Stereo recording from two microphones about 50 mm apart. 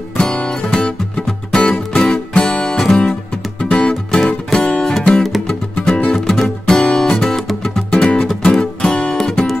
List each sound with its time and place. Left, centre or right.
0.2 s music: centre